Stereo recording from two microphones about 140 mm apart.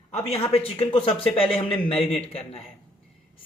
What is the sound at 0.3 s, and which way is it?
Speech, 45° left (ahead or behind).